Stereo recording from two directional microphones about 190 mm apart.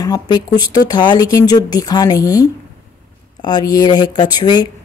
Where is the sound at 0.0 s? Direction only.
20° left (ahead or behind).